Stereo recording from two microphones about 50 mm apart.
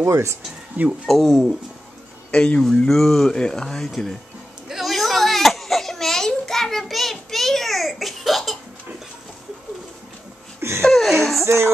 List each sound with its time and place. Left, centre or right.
0.0 s speech: right
1.0 s speech: centre
2.3 s speech: left
2.9 s speech: centre
3.3 s speech: centre
4.6 s a sound: centre
10.8 s speech: centre
11.4 s music: right